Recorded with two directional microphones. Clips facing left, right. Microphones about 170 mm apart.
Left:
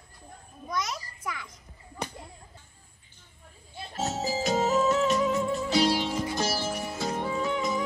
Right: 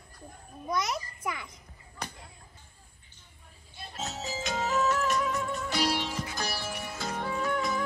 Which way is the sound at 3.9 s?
40° left (ahead or behind).